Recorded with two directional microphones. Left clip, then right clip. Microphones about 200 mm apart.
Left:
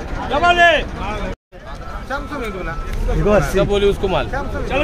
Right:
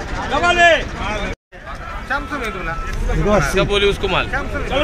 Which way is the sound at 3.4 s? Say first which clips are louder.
Even; 40° left (ahead or behind).